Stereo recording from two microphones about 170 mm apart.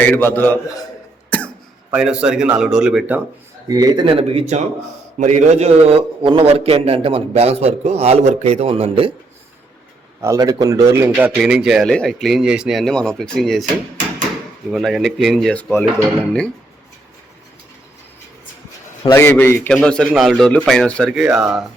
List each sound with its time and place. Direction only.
0.0 s a man's voice: 10° left (ahead or behind)
1.3 s cough: 10° left (ahead or behind)
1.9 s speech: 5° right (ahead or behind)
3.7 s a man's voice: 20° right (ahead or behind)
10.2 s speech: 20° right (ahead or behind)
11.3 s speech: 5° right (ahead or behind)
14.7 s speech: centre (ahead or behind)
19.0 s a man's voice: 15° left (ahead or behind); by 21.6 s centre (ahead or behind)